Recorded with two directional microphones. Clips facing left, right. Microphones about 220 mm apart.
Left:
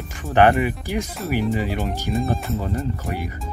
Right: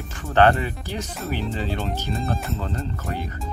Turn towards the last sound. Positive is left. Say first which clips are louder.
# left 3 dB
turn(degrees=15)  # may be behind; listen again after turning